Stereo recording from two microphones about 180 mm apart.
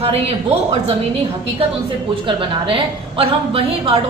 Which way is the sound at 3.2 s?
30° right (ahead or behind).